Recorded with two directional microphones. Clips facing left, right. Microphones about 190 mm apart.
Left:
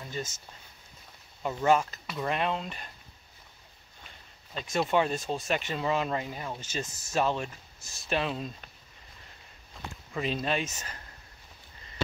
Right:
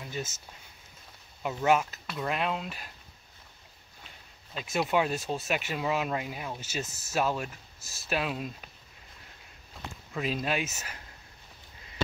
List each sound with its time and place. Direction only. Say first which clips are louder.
0.0 s speech: even; 5° right (ahead or behind)
4.6 s speech: left 1 dB; 5° right (ahead or behind)
10.1 s speech: left 1 dB; 5° right (ahead or behind)